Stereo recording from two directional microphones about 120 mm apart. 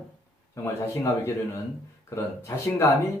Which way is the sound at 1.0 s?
25° left (ahead or behind).